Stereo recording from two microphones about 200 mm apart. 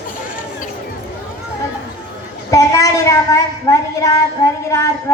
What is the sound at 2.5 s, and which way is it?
A woman's voice, 15° left (ahead or behind).